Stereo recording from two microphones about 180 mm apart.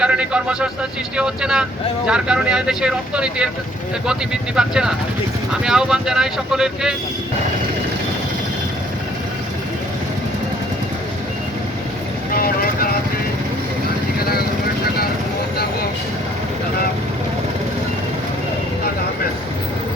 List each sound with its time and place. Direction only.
0.0 s speech: 5° right (ahead or behind)
12.4 s vehicle: 55° left (ahead or behind)
14.2 s vehicle: 60° left (ahead or behind)